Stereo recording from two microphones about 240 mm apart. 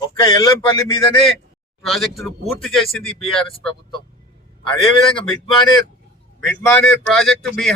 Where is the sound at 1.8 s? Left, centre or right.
Centre.